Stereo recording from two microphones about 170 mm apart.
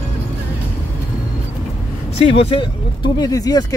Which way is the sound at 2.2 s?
35° left (ahead or behind).